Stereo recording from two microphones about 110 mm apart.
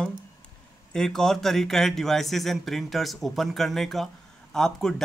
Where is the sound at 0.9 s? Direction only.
5° left (ahead or behind).